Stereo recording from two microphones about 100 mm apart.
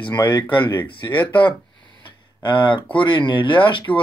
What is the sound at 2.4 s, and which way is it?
Speech, 55° left (ahead or behind).